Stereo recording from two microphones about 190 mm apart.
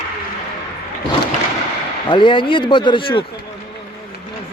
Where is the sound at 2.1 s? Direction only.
25° left (ahead or behind).